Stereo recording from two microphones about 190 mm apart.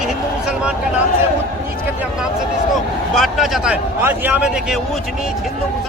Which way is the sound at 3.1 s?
Centre (ahead or behind).